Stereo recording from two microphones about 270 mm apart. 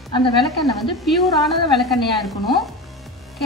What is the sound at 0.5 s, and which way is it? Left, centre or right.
A woman's voice, centre.